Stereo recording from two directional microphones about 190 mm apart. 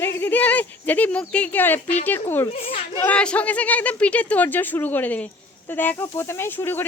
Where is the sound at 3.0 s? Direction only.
5° left (ahead or behind).